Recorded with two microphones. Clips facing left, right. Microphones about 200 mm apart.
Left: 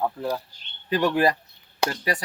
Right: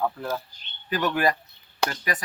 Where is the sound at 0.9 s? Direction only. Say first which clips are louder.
Left 3 dB; 30° left (ahead or behind).